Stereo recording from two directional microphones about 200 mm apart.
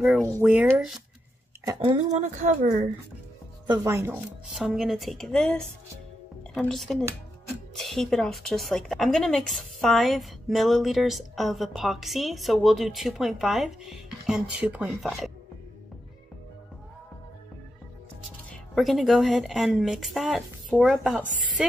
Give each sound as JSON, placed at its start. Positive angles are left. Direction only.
{"t": 0.4, "sound": "speech", "side_deg": -10}
{"t": 2.0, "sound": "a woman's voice", "side_deg": -35}
{"t": 3.6, "sound": "speech", "side_deg": -15}
{"t": 18.5, "sound": "speech", "side_deg": 0}